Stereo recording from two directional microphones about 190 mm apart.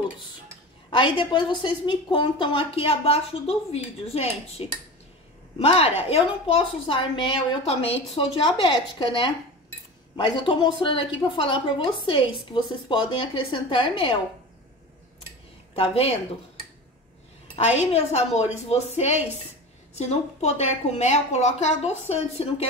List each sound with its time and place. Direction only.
0.8 s a woman's voice: 25° left (ahead or behind)
15.7 s a woman's voice: 30° left (ahead or behind)
17.6 s a woman's voice: 35° left (ahead or behind)